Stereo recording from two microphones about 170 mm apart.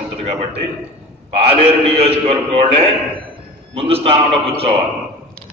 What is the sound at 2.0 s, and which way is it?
A man's voice, 35° right (ahead or behind).